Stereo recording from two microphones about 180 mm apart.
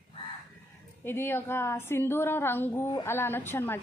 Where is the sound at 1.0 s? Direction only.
15° left (ahead or behind).